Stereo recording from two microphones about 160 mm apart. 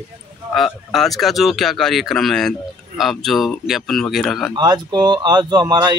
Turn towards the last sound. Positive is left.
turn(degrees=-30)  # may be behind; listen again after turning